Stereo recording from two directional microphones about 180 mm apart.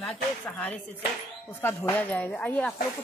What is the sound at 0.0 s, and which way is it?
Speech, 5° left (ahead or behind).